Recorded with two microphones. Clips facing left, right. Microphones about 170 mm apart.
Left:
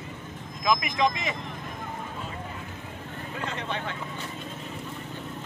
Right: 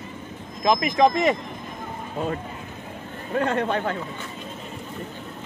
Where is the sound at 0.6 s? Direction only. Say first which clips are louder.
Right 6 dB; 40° right (ahead or behind).